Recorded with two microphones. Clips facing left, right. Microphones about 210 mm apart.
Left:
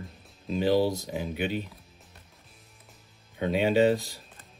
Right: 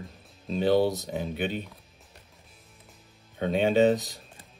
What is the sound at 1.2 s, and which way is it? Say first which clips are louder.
Speech: left 1 dB; 10° left (ahead or behind).